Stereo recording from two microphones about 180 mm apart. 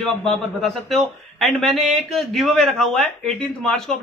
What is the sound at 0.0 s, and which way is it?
Speech, centre (ahead or behind).